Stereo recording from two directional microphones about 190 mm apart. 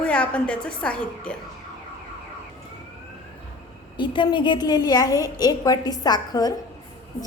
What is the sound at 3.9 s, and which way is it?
A woman's voice, 25° left (ahead or behind).